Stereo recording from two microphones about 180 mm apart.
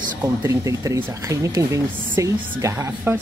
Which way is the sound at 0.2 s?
15° right (ahead or behind).